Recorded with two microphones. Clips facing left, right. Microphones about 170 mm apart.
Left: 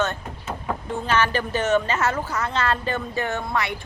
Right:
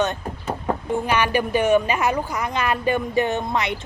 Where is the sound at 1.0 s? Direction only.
15° right (ahead or behind).